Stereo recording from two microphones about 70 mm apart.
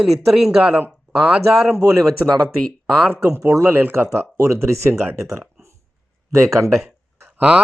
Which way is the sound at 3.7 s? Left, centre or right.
Right.